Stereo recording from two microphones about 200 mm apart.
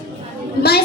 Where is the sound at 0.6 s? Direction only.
50° left (ahead or behind).